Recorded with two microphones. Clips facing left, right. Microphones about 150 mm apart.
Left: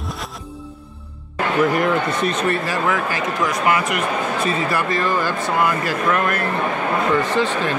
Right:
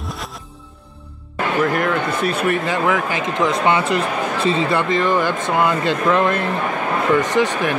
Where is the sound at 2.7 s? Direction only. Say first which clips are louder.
Right 2 dB; 20° right (ahead or behind).